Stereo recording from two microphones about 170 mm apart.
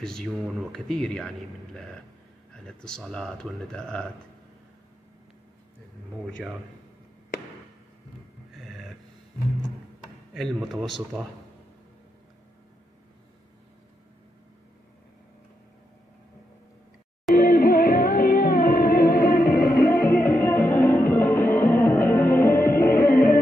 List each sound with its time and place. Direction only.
0.0 s a man's voice: 5° left (ahead or behind)
8.5 s dog: centre (ahead or behind)
10.3 s a man's voice: centre (ahead or behind)
17.4 s music: 65° left (ahead or behind)
19.9 s music: 15° left (ahead or behind)
23.0 s music: 55° left (ahead or behind)